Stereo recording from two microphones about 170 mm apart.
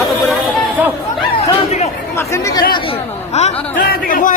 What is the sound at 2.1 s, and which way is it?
Speech, 15° left (ahead or behind).